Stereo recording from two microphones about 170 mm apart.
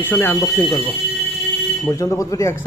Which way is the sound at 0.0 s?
15° left (ahead or behind).